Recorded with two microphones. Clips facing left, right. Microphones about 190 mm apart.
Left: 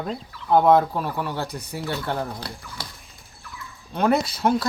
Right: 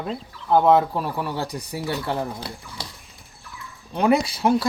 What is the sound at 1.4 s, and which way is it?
Speech, 15° right (ahead or behind).